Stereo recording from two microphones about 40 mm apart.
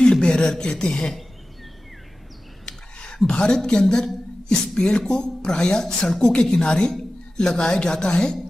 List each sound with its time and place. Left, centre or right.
0.0 s speech: left
2.6 s a sound: left
3.3 s a woman's voice: left